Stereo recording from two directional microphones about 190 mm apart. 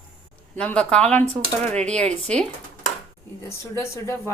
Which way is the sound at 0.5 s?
5° left (ahead or behind).